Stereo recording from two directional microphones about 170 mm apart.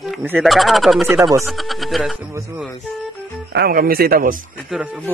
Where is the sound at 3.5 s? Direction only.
65° right (ahead or behind).